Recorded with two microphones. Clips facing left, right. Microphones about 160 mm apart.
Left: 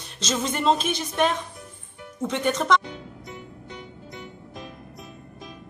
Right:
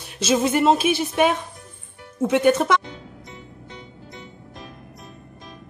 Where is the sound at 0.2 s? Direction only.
10° right (ahead or behind).